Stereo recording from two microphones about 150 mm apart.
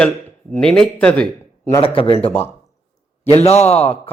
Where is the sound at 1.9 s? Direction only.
35° left (ahead or behind).